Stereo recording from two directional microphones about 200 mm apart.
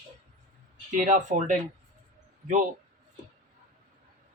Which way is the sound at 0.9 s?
40° right (ahead or behind).